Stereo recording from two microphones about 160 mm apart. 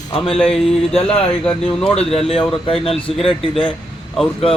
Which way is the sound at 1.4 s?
5° left (ahead or behind).